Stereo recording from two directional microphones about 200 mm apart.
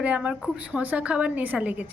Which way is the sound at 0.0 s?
5° right (ahead or behind).